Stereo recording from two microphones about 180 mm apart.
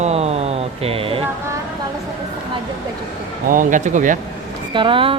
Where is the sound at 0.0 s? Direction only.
35° right (ahead or behind).